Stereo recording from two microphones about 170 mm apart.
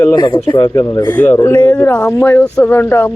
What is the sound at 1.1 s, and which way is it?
Speech, 10° left (ahead or behind).